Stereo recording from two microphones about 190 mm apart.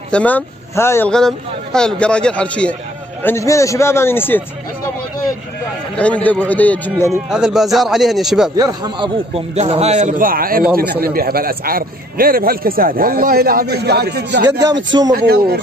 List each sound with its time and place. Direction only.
0.1 s a man's voice: 10° left (ahead or behind)
5.9 s a man's voice: 5° left (ahead or behind)
7.2 s a man's voice: 5° right (ahead or behind)
8.5 s a man's voice: 20° right (ahead or behind); by 14.5 s 60° right (ahead or behind)
15.0 s speech: 50° right (ahead or behind)